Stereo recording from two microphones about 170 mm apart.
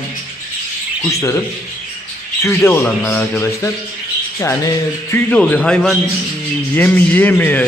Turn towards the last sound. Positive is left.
turn(degrees=10)  # may be behind; listen again after turning